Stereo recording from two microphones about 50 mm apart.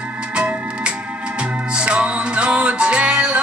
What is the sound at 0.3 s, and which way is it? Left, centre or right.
Music, right.